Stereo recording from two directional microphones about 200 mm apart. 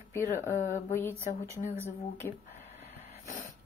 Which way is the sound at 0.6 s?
40° left (ahead or behind).